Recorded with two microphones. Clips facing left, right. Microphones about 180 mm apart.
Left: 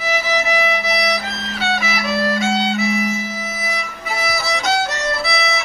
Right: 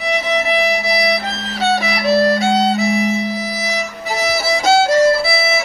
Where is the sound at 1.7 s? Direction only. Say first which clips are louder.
Right 7 dB; 35° right (ahead or behind).